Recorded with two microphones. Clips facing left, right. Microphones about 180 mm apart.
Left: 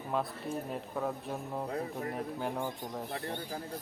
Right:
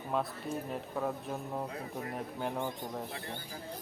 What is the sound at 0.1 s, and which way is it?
Speech, centre (ahead or behind).